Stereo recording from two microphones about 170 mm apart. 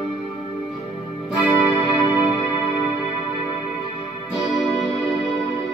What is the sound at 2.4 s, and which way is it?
Music, 20° left (ahead or behind).